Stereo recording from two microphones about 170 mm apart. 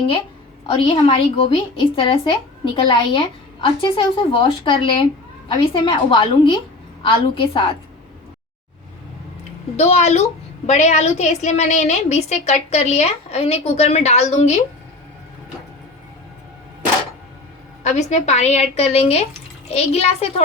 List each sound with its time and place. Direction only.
0.7 s a woman's voice: 30° left (ahead or behind)
9.7 s a woman's voice: 40° left (ahead or behind)
17.8 s a woman's voice: 40° left (ahead or behind)